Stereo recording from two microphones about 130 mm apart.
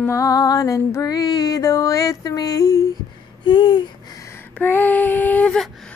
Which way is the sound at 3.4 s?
35° left (ahead or behind).